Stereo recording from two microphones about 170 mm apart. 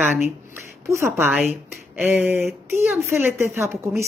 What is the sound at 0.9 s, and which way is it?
Speech, 15° right (ahead or behind).